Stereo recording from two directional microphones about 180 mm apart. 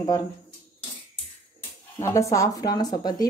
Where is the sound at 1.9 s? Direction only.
15° left (ahead or behind).